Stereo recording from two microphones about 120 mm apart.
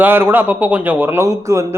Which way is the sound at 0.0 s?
15° right (ahead or behind).